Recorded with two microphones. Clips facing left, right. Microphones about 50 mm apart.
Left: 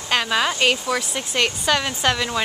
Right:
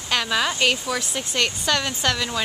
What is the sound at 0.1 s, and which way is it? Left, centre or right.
Speech, centre.